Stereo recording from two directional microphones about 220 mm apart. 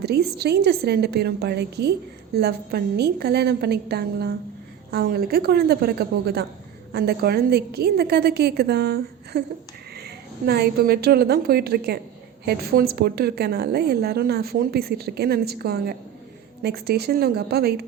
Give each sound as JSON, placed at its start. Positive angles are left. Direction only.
{"t": 0.0, "sound": "a woman's voice", "side_deg": -50}